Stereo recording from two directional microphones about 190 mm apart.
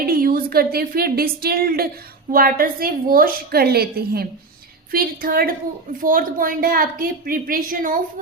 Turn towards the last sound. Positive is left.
turn(degrees=-45)  # may be behind; listen again after turning